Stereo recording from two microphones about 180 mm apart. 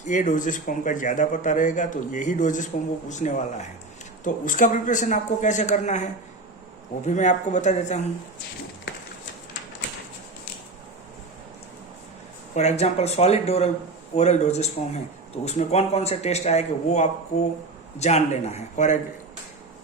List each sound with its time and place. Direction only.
0.1 s a man's voice: 45° left (ahead or behind)
12.5 s a man's voice: 40° left (ahead or behind)